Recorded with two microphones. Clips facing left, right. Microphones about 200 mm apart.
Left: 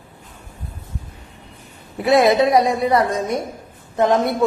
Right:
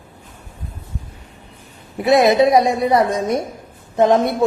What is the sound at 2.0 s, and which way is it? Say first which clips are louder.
Speech: right 1 dB; 20° right (ahead or behind).